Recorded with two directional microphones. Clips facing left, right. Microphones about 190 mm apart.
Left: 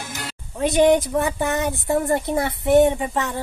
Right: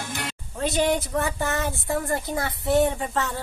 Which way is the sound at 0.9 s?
15° left (ahead or behind).